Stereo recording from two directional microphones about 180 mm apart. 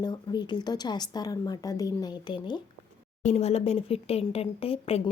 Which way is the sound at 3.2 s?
35° left (ahead or behind).